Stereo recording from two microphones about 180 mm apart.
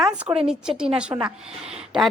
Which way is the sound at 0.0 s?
5° right (ahead or behind).